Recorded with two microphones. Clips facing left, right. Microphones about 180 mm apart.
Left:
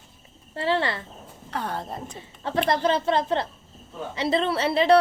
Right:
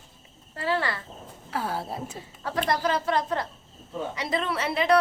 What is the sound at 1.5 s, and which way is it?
Speech, 5° right (ahead or behind).